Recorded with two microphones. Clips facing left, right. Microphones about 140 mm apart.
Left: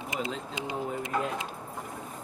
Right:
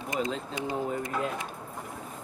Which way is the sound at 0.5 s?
20° left (ahead or behind).